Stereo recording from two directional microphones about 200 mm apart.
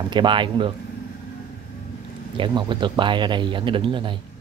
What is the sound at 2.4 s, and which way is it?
Speech, 25° right (ahead or behind).